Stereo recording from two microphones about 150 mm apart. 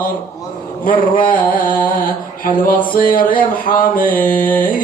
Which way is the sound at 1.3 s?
65° left (ahead or behind).